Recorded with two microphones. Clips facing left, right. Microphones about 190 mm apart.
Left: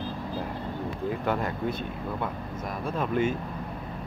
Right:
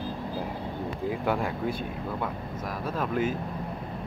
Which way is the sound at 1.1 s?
10° right (ahead or behind).